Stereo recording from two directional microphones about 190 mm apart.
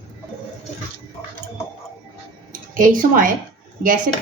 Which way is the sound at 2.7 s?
45° right (ahead or behind).